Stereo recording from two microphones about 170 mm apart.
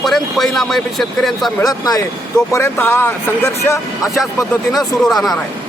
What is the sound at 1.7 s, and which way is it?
Speech, 20° left (ahead or behind).